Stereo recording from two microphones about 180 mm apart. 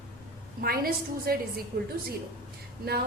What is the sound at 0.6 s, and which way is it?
A woman's voice, 55° right (ahead or behind).